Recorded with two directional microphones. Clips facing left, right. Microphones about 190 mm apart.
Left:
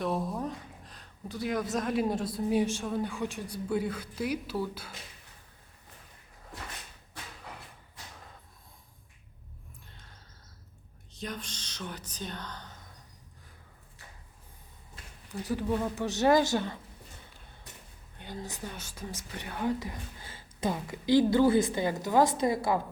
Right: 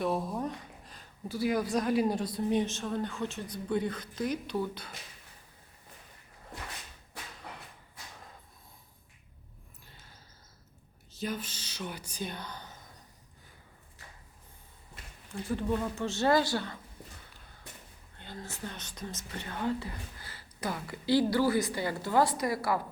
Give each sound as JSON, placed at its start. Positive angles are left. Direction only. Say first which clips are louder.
{"t": 0.0, "sound": "a sound", "louder": "even", "side_deg": 0}
{"t": 1.7, "sound": "speech", "louder": "right 1 dB", "side_deg": 0}
{"t": 9.8, "sound": "a sound", "louder": "left 1 dB", "side_deg": -5}
{"t": 11.1, "sound": "speech", "louder": "right 3 dB", "side_deg": -5}
{"t": 15.5, "sound": "speech", "louder": "left 1 dB", "side_deg": 10}
{"t": 18.2, "sound": "a woman's voice", "louder": "left 2 dB", "side_deg": 15}